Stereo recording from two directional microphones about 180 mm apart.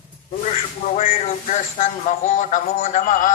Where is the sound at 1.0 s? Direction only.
45° left (ahead or behind).